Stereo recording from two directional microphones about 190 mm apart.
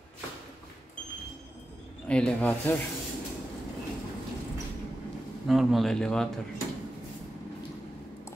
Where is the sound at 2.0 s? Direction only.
5° left (ahead or behind).